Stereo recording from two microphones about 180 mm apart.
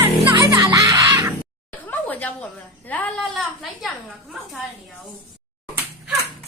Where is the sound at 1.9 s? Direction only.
10° left (ahead or behind).